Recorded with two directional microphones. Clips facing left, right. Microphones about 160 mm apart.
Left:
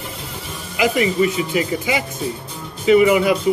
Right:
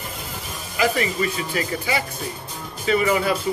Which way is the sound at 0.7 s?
15° left (ahead or behind).